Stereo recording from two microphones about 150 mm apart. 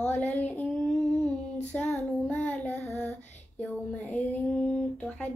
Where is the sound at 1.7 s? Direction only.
10° left (ahead or behind).